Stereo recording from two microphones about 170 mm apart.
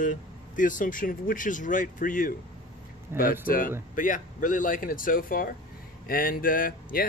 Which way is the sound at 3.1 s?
15° right (ahead or behind).